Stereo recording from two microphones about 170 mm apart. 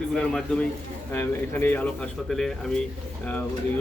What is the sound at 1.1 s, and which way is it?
Speech, 10° left (ahead or behind).